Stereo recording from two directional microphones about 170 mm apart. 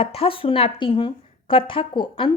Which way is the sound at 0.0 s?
35° left (ahead or behind).